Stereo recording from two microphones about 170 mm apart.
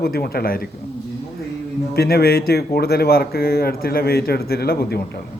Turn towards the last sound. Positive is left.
turn(degrees=70)  # may be behind; listen again after turning